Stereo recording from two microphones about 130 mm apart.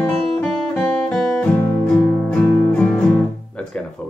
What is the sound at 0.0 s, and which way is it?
Music, 5° left (ahead or behind).